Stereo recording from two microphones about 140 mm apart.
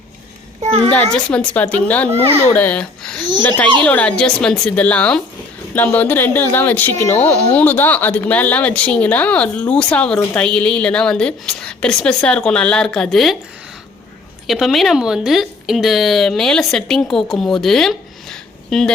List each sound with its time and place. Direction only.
0.6 s a child's voice: 45° right (ahead or behind)
0.9 s speech: 10° left (ahead or behind)
14.4 s speech: centre (ahead or behind)